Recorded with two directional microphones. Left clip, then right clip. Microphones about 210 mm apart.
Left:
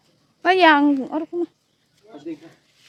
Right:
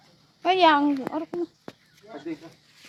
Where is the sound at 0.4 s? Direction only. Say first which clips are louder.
Left 4 dB; 40° left (ahead or behind).